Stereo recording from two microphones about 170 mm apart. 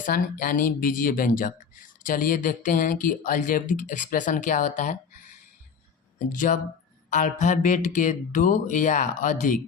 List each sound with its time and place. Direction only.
0.0 s speech: 55° left (ahead or behind)
6.1 s speech: 50° left (ahead or behind)